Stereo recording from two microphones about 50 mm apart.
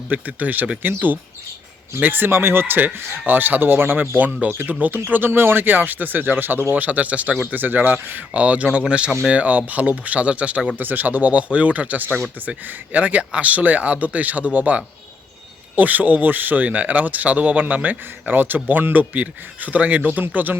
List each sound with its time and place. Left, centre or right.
0.1 s speech: right
5.1 s speech: right
6.7 s speech: right
7.5 s speech: right
10.8 s speech: right